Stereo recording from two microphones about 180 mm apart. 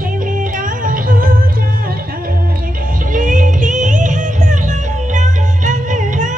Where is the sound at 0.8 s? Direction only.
50° right (ahead or behind).